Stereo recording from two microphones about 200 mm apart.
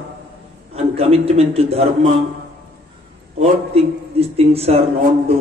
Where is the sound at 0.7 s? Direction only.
30° right (ahead or behind).